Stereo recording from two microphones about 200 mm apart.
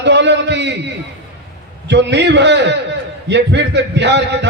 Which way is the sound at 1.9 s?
60° right (ahead or behind).